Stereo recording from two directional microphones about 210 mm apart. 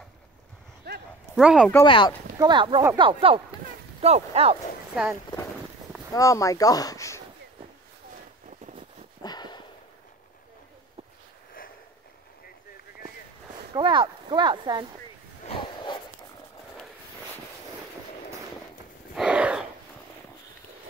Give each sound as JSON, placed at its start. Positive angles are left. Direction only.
{"t": 0.8, "sound": "a sound", "side_deg": -50}
{"t": 1.3, "sound": "speech", "side_deg": -5}
{"t": 1.9, "sound": "speech", "side_deg": 25}
{"t": 2.3, "sound": "speech", "side_deg": -20}
{"t": 6.1, "sound": "speech", "side_deg": 15}
{"t": 9.2, "sound": "sniff", "side_deg": 20}
{"t": 13.7, "sound": "speech", "side_deg": -20}
{"t": 15.4, "sound": "a sound", "side_deg": 25}
{"t": 19.1, "sound": "a sound", "side_deg": -5}